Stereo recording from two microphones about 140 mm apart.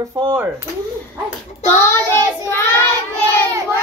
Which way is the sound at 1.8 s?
15° left (ahead or behind).